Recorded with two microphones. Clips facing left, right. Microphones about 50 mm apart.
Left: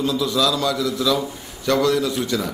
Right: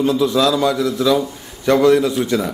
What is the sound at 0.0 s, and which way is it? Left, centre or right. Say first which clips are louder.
A man's voice: right 5 dB; right.